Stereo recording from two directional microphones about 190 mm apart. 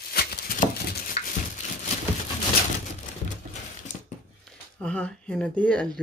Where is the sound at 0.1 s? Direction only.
55° left (ahead or behind).